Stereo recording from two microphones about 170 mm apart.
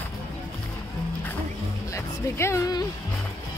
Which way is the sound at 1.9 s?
15° left (ahead or behind).